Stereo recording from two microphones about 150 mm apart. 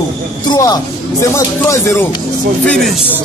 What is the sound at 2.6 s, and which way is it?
Music, 5° left (ahead or behind).